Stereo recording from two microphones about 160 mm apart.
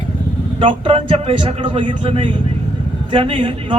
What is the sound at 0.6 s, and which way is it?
Speech, 35° right (ahead or behind).